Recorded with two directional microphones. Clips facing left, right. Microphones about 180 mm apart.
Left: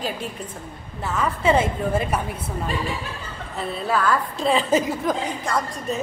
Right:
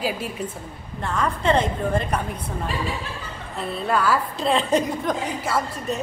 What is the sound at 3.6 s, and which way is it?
A woman's voice, centre (ahead or behind).